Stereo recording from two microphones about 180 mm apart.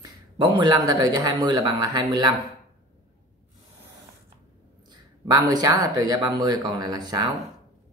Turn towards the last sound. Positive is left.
turn(degrees=-20)  # may be behind; listen again after turning